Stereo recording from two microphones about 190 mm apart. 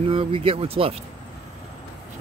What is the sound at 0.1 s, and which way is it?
Speech, 30° right (ahead or behind).